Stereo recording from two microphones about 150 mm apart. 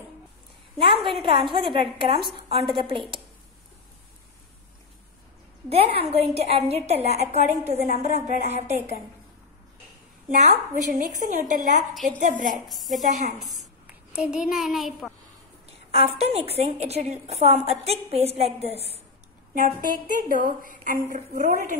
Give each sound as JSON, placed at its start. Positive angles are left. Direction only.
{"t": 0.7, "sound": "a woman's voice", "side_deg": -35}
{"t": 5.7, "sound": "a woman's voice", "side_deg": -40}
{"t": 10.3, "sound": "a woman's voice", "side_deg": -55}
{"t": 12.6, "sound": "a child's voice", "side_deg": 0}
{"t": 13.0, "sound": "a woman's voice", "side_deg": -55}
{"t": 14.1, "sound": "a child's voice", "side_deg": -5}
{"t": 15.9, "sound": "a woman's voice", "side_deg": -40}
{"t": 19.5, "sound": "a woman's voice", "side_deg": -65}